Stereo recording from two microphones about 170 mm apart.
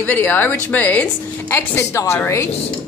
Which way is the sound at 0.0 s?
10° left (ahead or behind).